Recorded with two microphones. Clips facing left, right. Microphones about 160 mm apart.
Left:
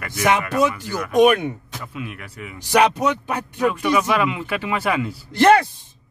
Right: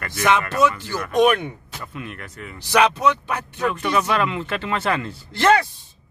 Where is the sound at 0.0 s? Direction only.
10° left (ahead or behind).